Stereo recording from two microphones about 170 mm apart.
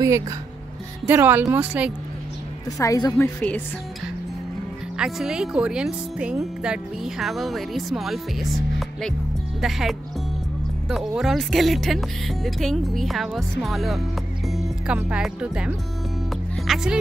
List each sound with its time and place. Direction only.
1.0 s speech: 10° right (ahead or behind)
2.8 s a woman's voice: 20° left (ahead or behind)
3.3 s speech: 10° left (ahead or behind)
4.9 s speech: 5° right (ahead or behind)
16.3 s music: centre (ahead or behind)